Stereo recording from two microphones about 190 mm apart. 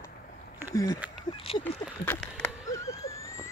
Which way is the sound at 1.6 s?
10° left (ahead or behind).